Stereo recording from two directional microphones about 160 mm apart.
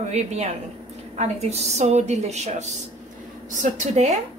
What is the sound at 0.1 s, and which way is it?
A woman's voice, 45° right (ahead or behind).